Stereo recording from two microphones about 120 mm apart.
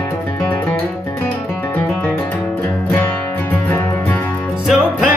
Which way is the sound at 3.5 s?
15° left (ahead or behind).